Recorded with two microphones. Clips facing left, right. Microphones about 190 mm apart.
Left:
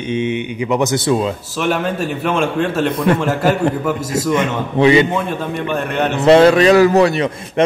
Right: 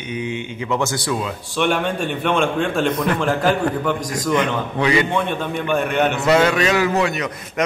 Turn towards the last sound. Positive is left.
turn(degrees=30)  # may be behind; listen again after turning